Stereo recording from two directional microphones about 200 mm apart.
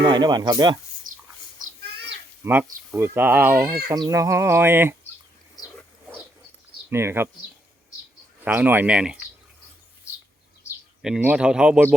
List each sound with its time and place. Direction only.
0.1 s speech: 20° right (ahead or behind)
1.1 s a sound: 40° right (ahead or behind)
2.4 s speech: 10° right (ahead or behind)
6.9 s speech: 10° right (ahead or behind)
8.4 s speech: 10° right (ahead or behind)
11.0 s speech: 5° right (ahead or behind)